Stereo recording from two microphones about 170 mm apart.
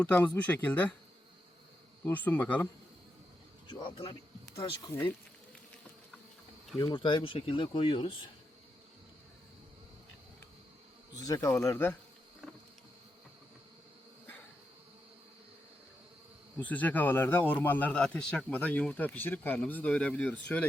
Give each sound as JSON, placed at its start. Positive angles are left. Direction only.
{"t": 0.0, "sound": "speech", "side_deg": 10}
{"t": 2.0, "sound": "speech", "side_deg": 10}
{"t": 3.7, "sound": "speech", "side_deg": 30}
{"t": 6.7, "sound": "speech", "side_deg": 30}
{"t": 11.3, "sound": "speech", "side_deg": 15}
{"t": 16.6, "sound": "speech", "side_deg": 10}